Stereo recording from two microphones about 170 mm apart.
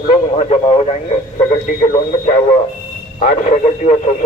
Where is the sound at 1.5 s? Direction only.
50° left (ahead or behind).